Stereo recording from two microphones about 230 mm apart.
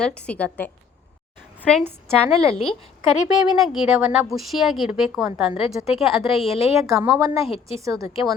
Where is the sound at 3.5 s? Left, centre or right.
Centre.